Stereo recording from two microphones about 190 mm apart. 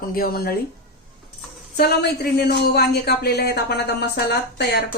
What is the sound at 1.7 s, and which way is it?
Speech, 55° left (ahead or behind).